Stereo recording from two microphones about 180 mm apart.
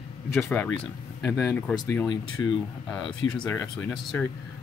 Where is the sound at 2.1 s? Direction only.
25° left (ahead or behind).